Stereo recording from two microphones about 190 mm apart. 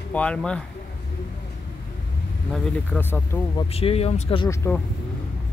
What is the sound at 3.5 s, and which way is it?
Speech, 30° left (ahead or behind).